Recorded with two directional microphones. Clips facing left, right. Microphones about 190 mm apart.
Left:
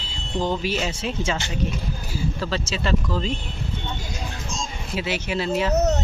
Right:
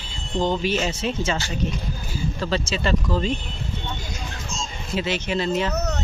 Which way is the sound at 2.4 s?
Centre (ahead or behind).